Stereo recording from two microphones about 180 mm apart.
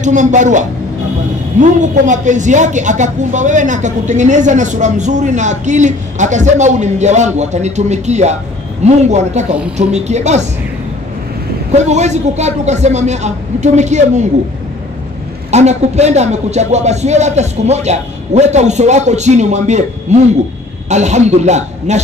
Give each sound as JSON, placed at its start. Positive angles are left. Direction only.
{"t": 0.0, "sound": "speech", "side_deg": -40}
{"t": 11.7, "sound": "speech", "side_deg": -40}
{"t": 15.5, "sound": "speech", "side_deg": -40}